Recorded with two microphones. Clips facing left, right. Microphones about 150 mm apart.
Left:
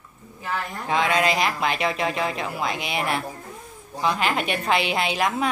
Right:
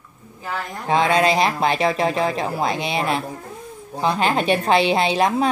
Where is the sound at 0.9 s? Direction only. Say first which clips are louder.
Right 5 dB; 30° right (ahead or behind).